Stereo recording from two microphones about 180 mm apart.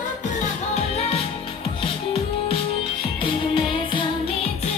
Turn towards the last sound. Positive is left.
turn(degrees=30)  # may be behind; listen again after turning